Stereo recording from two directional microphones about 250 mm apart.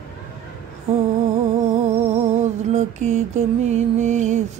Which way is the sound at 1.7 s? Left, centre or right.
Right.